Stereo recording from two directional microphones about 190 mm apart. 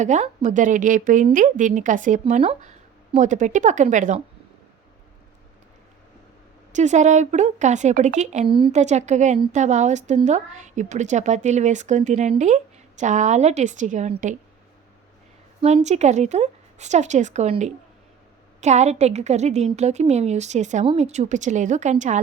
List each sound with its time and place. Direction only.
0.0 s a woman's voice: 40° right (ahead or behind)
6.7 s a woman's voice: 40° right (ahead or behind)
8.4 s a woman's voice: 25° right (ahead or behind)
8.8 s a woman's voice: 40° right (ahead or behind)
15.6 s a woman's voice: 35° right (ahead or behind)